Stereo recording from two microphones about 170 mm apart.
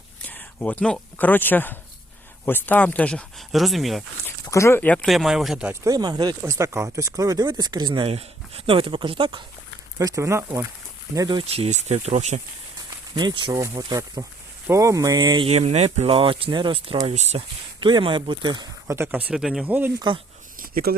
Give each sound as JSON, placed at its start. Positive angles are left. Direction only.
{"t": 0.2, "sound": "speech", "side_deg": 10}
{"t": 4.5, "sound": "speech", "side_deg": 15}
{"t": 5.0, "sound": "speech", "side_deg": 0}
{"t": 5.8, "sound": "speech", "side_deg": -25}
{"t": 10.0, "sound": "speech", "side_deg": -20}
{"t": 13.1, "sound": "speech", "side_deg": -25}
{"t": 18.9, "sound": "speech", "side_deg": -15}
{"t": 19.3, "sound": "speech", "side_deg": 0}
{"t": 20.0, "sound": "speech", "side_deg": -30}
{"t": 20.6, "sound": "a sound", "side_deg": -55}